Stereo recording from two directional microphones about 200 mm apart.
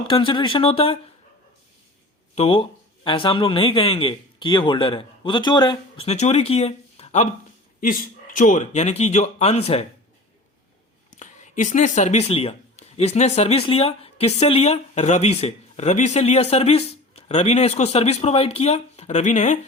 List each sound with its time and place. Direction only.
0.1 s speech: 25° left (ahead or behind)
2.3 s speech: 30° left (ahead or behind)
7.8 s speech: 45° left (ahead or behind)
11.2 s speech: 35° left (ahead or behind)